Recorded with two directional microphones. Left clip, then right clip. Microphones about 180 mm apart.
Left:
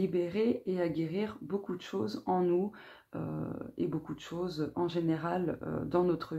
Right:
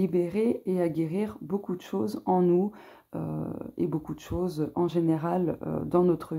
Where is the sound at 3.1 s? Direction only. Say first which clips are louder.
Right 4 dB; 35° right (ahead or behind).